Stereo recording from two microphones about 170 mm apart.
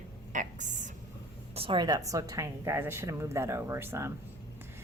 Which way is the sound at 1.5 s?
30° right (ahead or behind).